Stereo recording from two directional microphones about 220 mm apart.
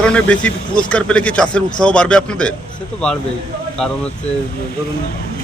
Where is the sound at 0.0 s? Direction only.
5° left (ahead or behind).